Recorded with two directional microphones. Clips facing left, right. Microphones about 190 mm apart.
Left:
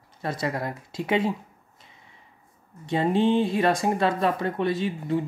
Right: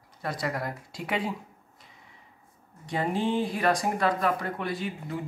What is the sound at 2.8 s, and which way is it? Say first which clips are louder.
Speech: left 6 dB; 25° left (ahead or behind).